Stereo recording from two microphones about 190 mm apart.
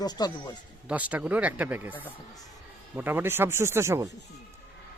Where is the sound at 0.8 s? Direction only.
5° right (ahead or behind).